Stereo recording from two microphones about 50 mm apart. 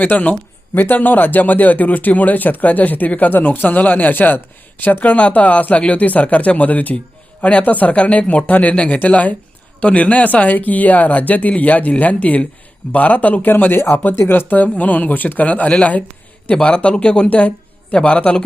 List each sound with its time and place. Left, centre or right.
0.0 s speech: left